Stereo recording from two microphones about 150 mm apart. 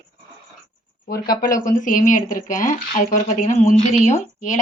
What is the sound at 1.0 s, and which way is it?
Speech, 80° left.